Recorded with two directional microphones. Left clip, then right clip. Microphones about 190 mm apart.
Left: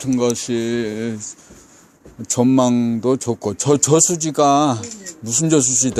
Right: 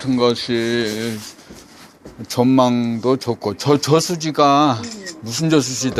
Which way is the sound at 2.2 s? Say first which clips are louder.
Right 1 dB; 55° left (ahead or behind).